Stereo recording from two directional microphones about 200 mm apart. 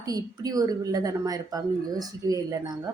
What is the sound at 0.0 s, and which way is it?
A woman's voice, 20° right (ahead or behind).